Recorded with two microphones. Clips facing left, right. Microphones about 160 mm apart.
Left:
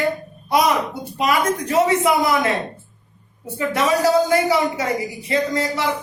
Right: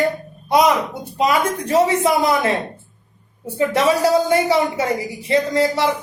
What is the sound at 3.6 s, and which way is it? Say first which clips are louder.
Speech: right 2 dB; 30° right (ahead or behind).